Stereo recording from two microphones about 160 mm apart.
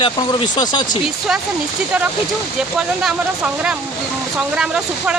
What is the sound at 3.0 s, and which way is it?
Speech, 5° right (ahead or behind).